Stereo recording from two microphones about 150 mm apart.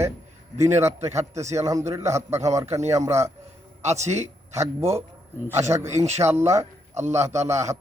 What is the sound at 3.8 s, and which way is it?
Speech, 50° right (ahead or behind).